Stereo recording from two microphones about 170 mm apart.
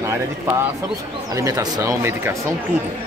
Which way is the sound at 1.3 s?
20° right (ahead or behind).